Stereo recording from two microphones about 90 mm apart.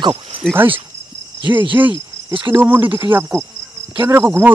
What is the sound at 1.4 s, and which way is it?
Cricket, 60° right (ahead or behind).